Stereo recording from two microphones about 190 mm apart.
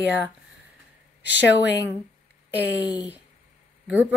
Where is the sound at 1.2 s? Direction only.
65° left (ahead or behind).